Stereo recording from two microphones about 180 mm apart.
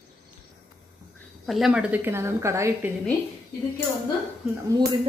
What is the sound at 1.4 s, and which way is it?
A woman's voice, centre (ahead or behind).